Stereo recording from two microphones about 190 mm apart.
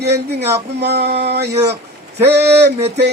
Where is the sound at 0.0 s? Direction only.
60° right (ahead or behind).